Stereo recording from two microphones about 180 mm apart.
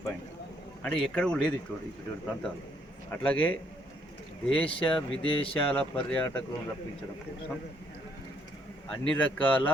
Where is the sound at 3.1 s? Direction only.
10° left (ahead or behind).